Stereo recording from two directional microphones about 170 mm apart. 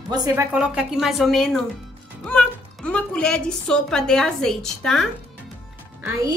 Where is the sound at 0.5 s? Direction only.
5° right (ahead or behind).